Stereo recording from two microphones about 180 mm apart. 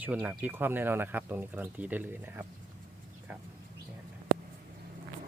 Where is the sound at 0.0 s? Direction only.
10° right (ahead or behind).